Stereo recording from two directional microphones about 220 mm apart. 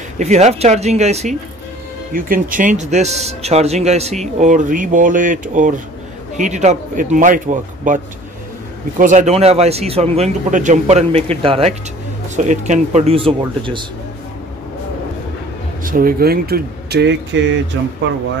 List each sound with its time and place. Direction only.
0.2 s speech: 30° right (ahead or behind)
15.8 s speech: 40° right (ahead or behind)